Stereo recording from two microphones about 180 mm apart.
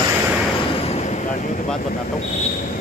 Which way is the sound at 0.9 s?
40° left (ahead or behind).